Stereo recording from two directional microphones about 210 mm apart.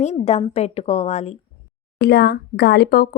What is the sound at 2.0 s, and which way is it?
Speech, 50° left (ahead or behind).